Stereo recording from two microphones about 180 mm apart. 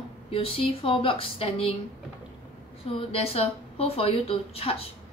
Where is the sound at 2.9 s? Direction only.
30° left (ahead or behind).